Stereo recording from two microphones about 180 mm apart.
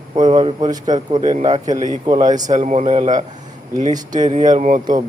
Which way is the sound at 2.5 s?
40° right (ahead or behind).